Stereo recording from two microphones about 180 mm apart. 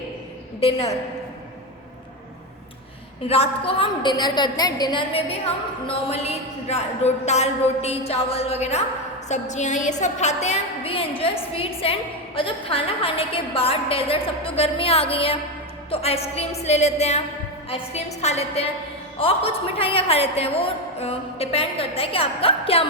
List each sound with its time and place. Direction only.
0.6 s a woman's voice: 35° left (ahead or behind)
3.2 s a woman's voice: 30° left (ahead or behind)